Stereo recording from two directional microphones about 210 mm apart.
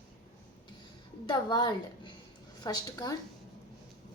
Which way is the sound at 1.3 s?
20° left (ahead or behind).